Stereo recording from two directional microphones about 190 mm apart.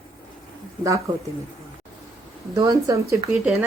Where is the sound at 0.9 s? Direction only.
15° right (ahead or behind).